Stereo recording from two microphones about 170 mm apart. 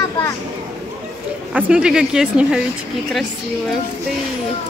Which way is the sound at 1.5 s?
5° right (ahead or behind).